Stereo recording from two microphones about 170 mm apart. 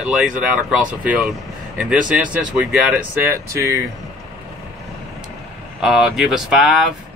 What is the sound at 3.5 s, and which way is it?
Speech, 20° right (ahead or behind).